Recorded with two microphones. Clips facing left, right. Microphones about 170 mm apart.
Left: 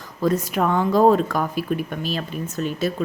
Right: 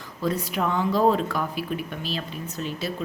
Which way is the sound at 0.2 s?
45° left (ahead or behind).